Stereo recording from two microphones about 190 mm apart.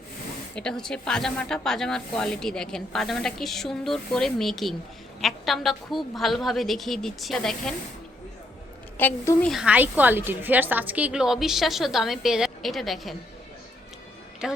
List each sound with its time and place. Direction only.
0.5 s speech: 5° left (ahead or behind)
9.0 s a woman's voice: 10° left (ahead or behind)
9.5 s speech: 5° right (ahead or behind)
14.4 s speech: 5° right (ahead or behind)